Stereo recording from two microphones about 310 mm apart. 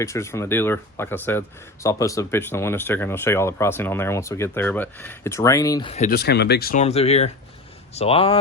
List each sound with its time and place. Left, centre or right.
0.0 s speech: centre